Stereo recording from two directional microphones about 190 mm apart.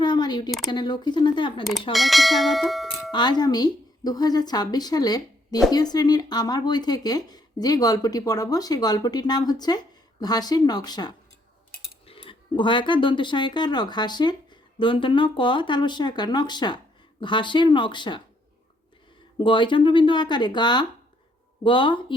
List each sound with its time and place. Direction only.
0.0 s a sound: 25° left (ahead or behind)
0.7 s speech: 20° left (ahead or behind)
1.9 s speech: centre (ahead or behind)
3.1 s speech: 20° left (ahead or behind)
19.4 s speech: 25° left (ahead or behind)